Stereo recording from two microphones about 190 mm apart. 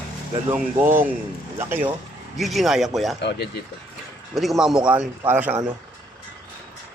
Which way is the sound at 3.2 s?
65° left (ahead or behind).